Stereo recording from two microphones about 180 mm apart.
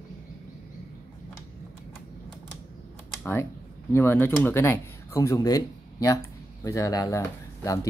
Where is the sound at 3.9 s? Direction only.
15° left (ahead or behind).